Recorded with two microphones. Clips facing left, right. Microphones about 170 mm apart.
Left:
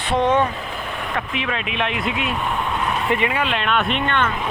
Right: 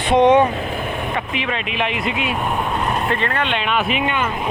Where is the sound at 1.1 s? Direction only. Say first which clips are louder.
Right 1 dB; centre (ahead or behind).